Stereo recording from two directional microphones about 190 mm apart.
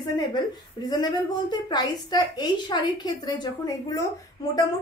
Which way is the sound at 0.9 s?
20° left (ahead or behind).